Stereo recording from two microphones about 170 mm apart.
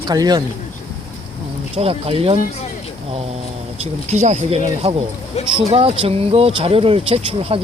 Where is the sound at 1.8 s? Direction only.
35° right (ahead or behind).